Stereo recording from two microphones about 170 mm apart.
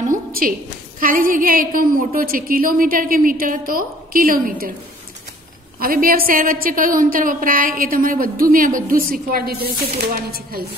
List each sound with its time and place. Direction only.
0.1 s a woman's voice: 60° right (ahead or behind)
5.8 s a woman's voice: 55° right (ahead or behind)